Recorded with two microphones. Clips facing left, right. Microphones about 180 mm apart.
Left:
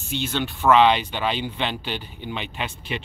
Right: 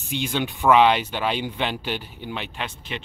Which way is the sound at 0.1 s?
15° right (ahead or behind).